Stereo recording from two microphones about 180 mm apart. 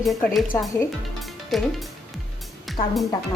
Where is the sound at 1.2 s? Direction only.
Centre (ahead or behind).